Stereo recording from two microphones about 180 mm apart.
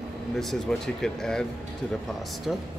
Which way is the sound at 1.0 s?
5° left (ahead or behind).